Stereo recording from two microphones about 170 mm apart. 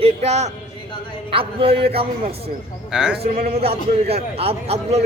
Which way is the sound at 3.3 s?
60° right (ahead or behind).